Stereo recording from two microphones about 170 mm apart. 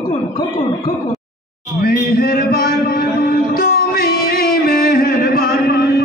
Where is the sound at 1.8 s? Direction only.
60° left (ahead or behind).